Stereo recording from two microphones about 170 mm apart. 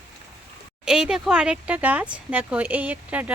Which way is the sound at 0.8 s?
5° right (ahead or behind).